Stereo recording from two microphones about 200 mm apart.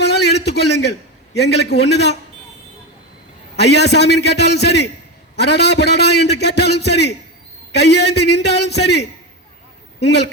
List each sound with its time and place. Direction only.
0.0 s a sound: 55° left (ahead or behind)
1.4 s a man's voice: 55° left (ahead or behind)
3.5 s a man's voice: 55° left (ahead or behind)